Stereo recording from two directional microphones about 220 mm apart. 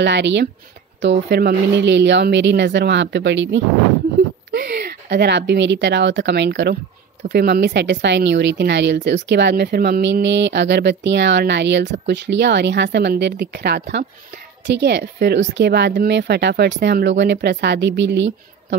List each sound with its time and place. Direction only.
0.0 s a woman's voice: 50° right (ahead or behind)